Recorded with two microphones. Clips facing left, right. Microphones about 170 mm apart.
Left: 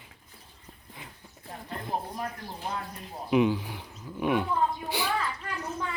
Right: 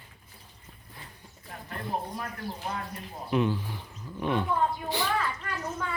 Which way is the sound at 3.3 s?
15° left (ahead or behind).